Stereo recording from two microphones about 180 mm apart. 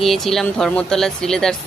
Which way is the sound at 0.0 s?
Centre (ahead or behind).